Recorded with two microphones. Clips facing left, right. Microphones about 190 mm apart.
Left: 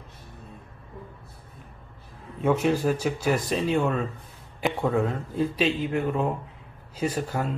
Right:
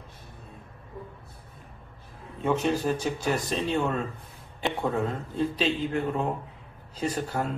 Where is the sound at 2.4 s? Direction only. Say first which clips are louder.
Left 3 dB; 5° left (ahead or behind).